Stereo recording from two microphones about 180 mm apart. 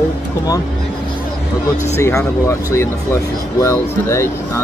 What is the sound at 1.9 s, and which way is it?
Speech, 15° left (ahead or behind).